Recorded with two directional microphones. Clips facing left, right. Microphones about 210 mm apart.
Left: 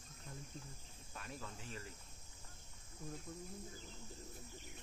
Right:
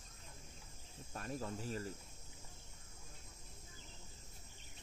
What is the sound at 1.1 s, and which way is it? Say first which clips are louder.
Speech: right 7 dB; 40° right (ahead or behind).